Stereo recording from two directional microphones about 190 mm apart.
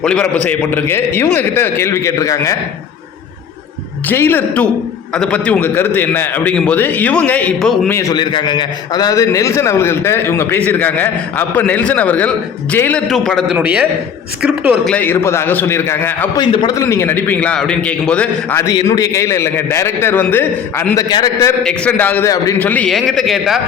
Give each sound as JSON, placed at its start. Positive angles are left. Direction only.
{"t": 0.0, "sound": "a man's voice", "side_deg": 5}
{"t": 4.1, "sound": "a man's voice", "side_deg": 10}
{"t": 14.9, "sound": "a man's voice", "side_deg": 10}
{"t": 16.4, "sound": "a man's voice", "side_deg": 20}
{"t": 21.1, "sound": "a man's voice", "side_deg": 20}
{"t": 21.6, "sound": "a man's voice", "side_deg": 5}